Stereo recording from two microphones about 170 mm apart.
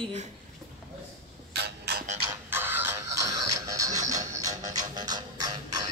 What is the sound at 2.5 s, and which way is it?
Music, 10° right (ahead or behind).